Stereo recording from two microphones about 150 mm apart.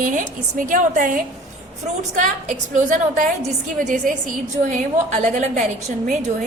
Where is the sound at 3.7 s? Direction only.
60° right (ahead or behind).